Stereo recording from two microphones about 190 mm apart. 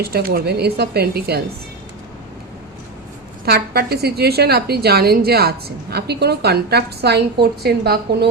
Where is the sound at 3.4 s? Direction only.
55° right (ahead or behind).